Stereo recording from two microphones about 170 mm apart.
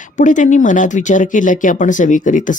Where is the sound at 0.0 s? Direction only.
45° left (ahead or behind).